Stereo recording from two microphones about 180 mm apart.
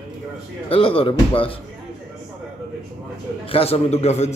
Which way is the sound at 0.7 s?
30° left (ahead or behind).